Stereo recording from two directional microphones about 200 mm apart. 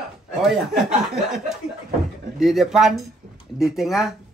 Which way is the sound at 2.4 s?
Centre (ahead or behind).